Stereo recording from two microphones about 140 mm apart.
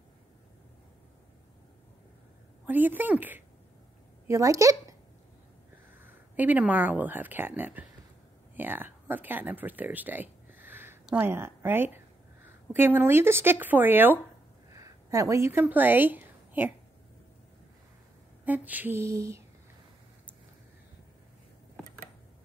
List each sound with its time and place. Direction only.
2.6 s a woman's voice: 15° right (ahead or behind)
6.0 s speech: 10° right (ahead or behind)
18.4 s speech: 10° right (ahead or behind)